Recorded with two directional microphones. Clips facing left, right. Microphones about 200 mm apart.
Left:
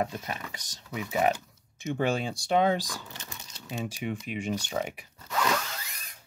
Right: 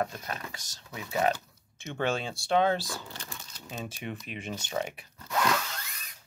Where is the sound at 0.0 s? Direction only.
15° left (ahead or behind).